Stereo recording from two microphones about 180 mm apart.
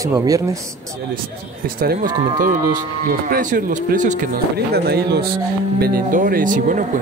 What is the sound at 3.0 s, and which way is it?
Speech, 50° right (ahead or behind).